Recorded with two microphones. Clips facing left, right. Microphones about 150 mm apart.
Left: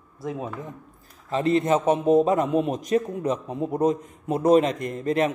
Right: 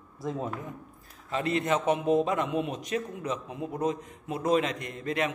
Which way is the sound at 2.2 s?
40° left (ahead or behind).